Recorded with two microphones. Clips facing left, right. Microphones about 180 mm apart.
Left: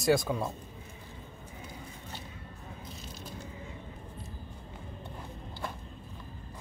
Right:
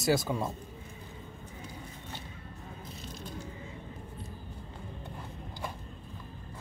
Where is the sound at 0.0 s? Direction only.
5° right (ahead or behind).